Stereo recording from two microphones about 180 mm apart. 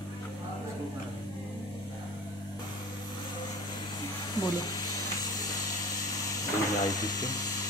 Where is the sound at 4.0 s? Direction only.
20° left (ahead or behind).